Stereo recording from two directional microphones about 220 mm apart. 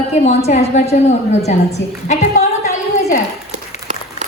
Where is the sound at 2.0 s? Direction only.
35° left (ahead or behind).